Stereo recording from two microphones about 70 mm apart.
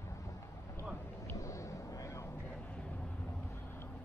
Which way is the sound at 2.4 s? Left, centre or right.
Centre.